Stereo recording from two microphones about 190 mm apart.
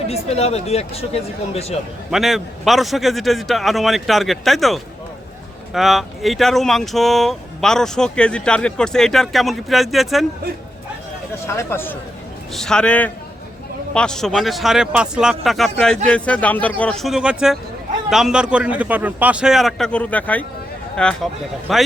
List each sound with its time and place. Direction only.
0.1 s speech: 35° left (ahead or behind)
2.0 s speech: centre (ahead or behind)
11.4 s a man's voice: 15° left (ahead or behind)